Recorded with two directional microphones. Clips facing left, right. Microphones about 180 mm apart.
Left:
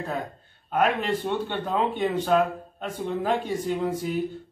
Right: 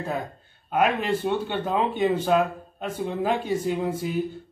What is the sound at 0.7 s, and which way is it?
Speech, 5° right (ahead or behind).